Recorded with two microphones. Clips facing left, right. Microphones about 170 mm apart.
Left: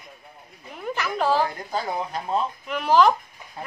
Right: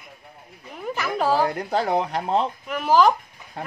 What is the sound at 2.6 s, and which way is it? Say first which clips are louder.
Speech: even; 5° right (ahead or behind).